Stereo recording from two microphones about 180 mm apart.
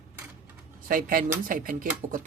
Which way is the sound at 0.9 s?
50° right (ahead or behind).